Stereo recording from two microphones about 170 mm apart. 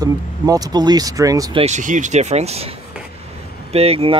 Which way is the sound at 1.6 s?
45° right (ahead or behind).